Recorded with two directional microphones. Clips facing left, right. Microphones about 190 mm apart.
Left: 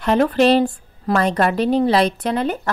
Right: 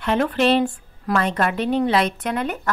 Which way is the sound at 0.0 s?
40° left (ahead or behind).